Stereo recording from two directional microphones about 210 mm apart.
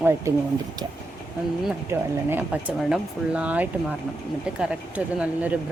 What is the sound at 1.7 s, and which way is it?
Speech, 10° right (ahead or behind).